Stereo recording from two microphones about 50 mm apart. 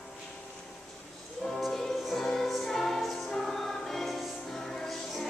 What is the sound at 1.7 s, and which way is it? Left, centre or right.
Music, centre.